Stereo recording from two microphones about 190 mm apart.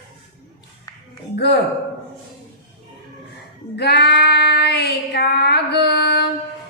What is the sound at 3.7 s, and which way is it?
Child singing, 60° left (ahead or behind).